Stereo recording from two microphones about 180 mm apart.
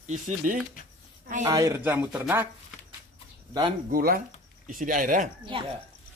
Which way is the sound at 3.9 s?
55° right (ahead or behind).